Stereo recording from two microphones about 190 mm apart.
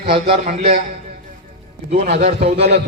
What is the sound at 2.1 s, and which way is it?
Speech, 35° right (ahead or behind).